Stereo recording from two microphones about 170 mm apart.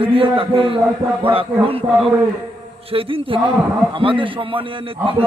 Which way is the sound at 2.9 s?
35° right (ahead or behind).